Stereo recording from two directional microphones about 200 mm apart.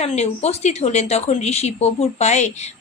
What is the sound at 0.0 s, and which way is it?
A woman's voice, 30° left (ahead or behind).